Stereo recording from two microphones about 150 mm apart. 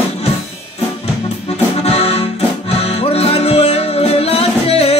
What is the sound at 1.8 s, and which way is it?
Music, 45° left (ahead or behind).